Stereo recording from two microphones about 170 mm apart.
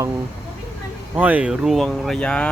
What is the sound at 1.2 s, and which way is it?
Speech, 10° right (ahead or behind).